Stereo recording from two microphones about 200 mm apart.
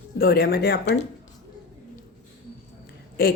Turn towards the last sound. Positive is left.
turn(degrees=50)  # may be behind; listen again after turning